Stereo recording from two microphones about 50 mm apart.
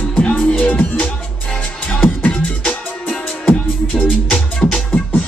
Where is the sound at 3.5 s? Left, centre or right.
Left.